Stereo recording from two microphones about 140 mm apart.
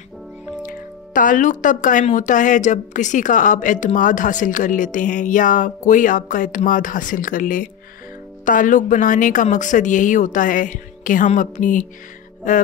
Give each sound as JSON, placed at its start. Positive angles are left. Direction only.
{"t": 0.6, "sound": "a woman's voice", "side_deg": 75}